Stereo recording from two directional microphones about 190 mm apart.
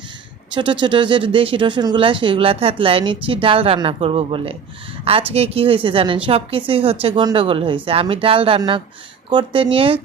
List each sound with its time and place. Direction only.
0.5 s speech: 25° right (ahead or behind)